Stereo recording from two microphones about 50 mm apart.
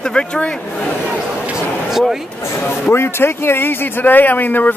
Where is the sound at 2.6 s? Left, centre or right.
Left.